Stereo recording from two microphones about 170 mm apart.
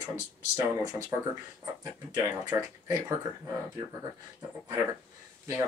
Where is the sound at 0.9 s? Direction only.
15° right (ahead or behind).